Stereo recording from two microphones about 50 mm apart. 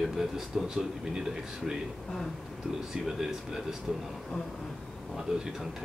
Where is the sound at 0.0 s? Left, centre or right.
Centre.